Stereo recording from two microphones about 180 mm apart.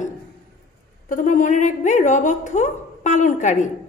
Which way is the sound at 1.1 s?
45° left (ahead or behind).